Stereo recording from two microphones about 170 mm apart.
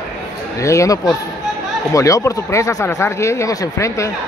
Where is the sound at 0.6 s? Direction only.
20° left (ahead or behind).